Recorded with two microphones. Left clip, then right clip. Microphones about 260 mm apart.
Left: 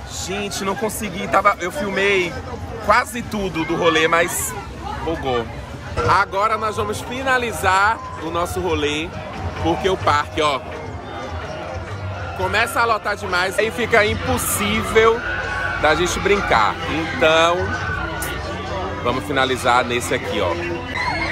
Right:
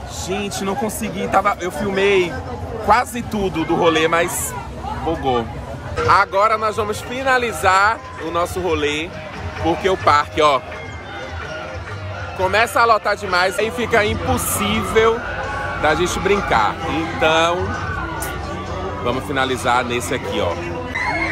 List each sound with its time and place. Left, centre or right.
0.3 s speech: centre
6.0 s a man's voice: centre
12.4 s a man's voice: centre
13.6 s speech: centre
19.0 s speech: centre
20.9 s music: centre